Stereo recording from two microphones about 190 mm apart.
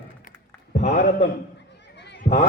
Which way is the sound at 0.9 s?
60° left (ahead or behind).